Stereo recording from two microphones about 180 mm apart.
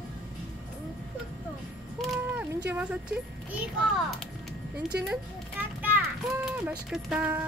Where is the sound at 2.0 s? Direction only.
10° right (ahead or behind).